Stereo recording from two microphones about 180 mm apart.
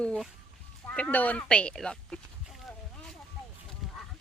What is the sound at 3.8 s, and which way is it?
Goose, centre (ahead or behind).